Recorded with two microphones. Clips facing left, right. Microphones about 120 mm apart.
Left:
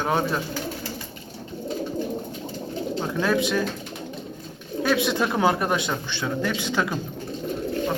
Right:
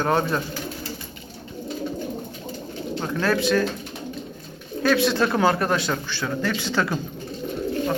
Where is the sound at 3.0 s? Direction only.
10° left (ahead or behind).